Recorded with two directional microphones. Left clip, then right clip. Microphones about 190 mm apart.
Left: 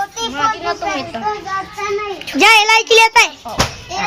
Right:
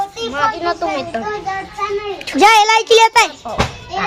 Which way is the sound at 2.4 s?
10° right (ahead or behind).